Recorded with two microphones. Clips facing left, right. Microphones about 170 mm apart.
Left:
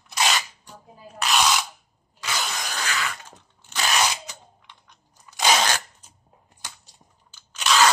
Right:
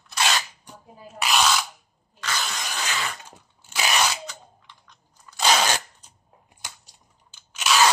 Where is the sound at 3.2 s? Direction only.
10° right (ahead or behind).